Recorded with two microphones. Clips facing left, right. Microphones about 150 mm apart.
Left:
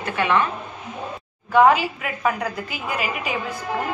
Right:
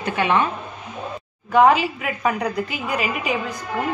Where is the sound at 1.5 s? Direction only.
Centre (ahead or behind).